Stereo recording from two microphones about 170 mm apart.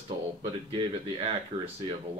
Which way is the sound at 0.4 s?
30° right (ahead or behind).